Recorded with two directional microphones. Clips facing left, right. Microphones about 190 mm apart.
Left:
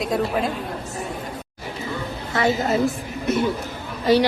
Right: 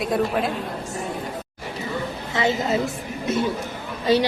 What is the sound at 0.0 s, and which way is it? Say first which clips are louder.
Speech: even; centre (ahead or behind).